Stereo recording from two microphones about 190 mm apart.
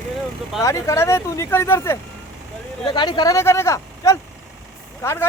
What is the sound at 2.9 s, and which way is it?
Speech, 25° left (ahead or behind).